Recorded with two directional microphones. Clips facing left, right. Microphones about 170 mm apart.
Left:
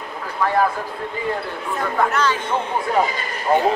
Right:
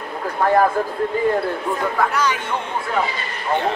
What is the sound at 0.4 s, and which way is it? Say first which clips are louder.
Speech: right 4 dB; 55° right (ahead or behind).